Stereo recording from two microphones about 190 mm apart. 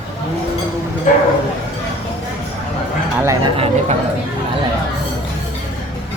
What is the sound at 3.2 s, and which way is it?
Speech, 15° right (ahead or behind).